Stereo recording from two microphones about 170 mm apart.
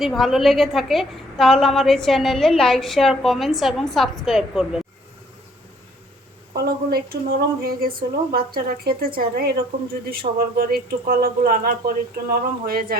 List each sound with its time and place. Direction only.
0.0 s a woman's voice: centre (ahead or behind)
6.7 s speech: 65° right (ahead or behind)